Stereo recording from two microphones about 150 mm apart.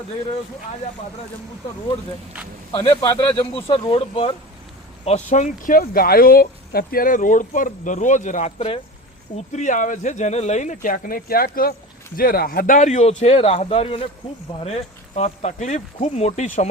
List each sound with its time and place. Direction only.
2.7 s speech: 25° left (ahead or behind)
3.3 s speech: 35° left (ahead or behind)
5.0 s speech: 50° left (ahead or behind)
9.3 s speech: 50° left (ahead or behind)